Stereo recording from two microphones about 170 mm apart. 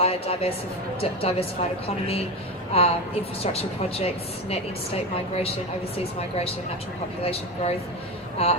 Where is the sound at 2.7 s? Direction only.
35° left (ahead or behind).